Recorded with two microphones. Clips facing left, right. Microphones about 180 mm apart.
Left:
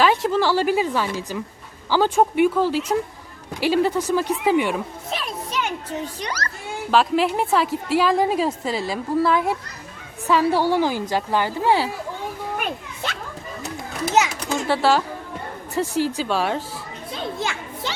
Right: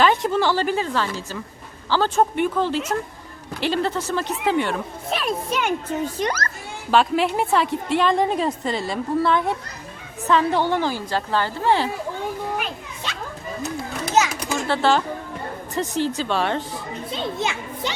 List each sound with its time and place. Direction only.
0.0 s a woman's voice: 5° left (ahead or behind)
5.1 s a child's voice: 55° right (ahead or behind)
6.9 s a woman's voice: centre (ahead or behind)
12.5 s children playing: 50° left (ahead or behind)
14.7 s a woman's voice: 5° left (ahead or behind)
17.1 s a child's voice: 20° right (ahead or behind)